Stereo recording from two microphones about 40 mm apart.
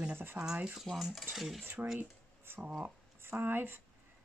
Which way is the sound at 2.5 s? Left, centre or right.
Right.